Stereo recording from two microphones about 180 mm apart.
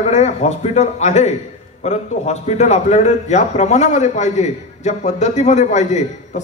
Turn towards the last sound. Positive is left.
turn(degrees=40)  # may be behind; listen again after turning